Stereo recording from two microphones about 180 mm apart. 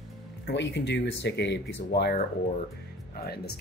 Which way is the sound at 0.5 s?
75° left (ahead or behind).